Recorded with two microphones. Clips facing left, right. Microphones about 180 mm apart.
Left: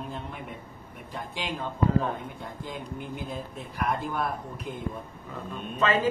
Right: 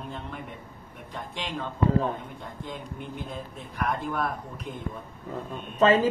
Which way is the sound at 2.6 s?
5° left (ahead or behind).